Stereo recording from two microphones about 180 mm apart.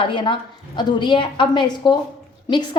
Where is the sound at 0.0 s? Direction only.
25° left (ahead or behind).